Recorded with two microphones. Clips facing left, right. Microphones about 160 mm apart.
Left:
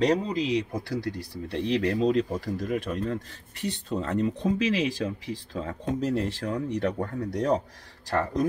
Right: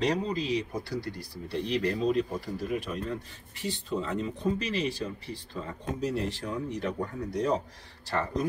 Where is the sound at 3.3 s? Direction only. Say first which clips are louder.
Left 3 dB; 75° left (ahead or behind).